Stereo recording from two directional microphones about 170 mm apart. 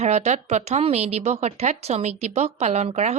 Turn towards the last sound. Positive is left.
turn(degrees=-40)  # may be behind; listen again after turning